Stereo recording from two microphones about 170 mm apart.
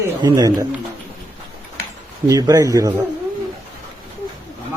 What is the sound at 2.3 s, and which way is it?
Speech, 20° right (ahead or behind).